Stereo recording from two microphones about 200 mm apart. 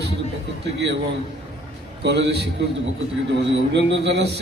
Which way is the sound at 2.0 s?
55° right (ahead or behind).